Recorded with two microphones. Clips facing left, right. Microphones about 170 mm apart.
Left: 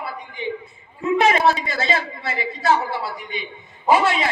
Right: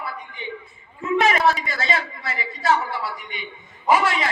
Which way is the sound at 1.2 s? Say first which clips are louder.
Left 2 dB; 30° left (ahead or behind).